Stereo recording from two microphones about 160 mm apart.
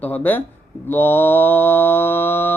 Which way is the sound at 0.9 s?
15° left (ahead or behind).